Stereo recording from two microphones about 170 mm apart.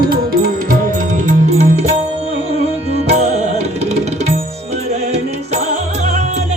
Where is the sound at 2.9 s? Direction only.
40° right (ahead or behind).